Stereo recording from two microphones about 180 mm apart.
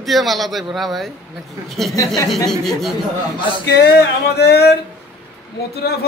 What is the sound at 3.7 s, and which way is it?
A man's voice, 60° left (ahead or behind).